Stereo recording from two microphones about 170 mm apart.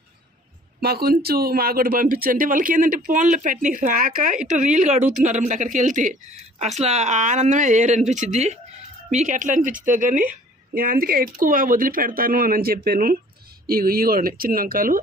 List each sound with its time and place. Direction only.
0.8 s speech: 65° right (ahead or behind)